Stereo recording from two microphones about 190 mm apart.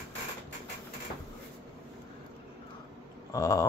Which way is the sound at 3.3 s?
15° left (ahead or behind).